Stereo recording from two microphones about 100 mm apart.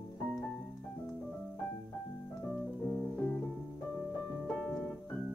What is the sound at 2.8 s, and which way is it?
Music, 10° left (ahead or behind).